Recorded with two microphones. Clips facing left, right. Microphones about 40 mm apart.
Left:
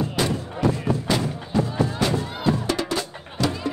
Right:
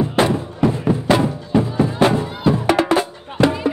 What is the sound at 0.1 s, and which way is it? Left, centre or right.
Music, right.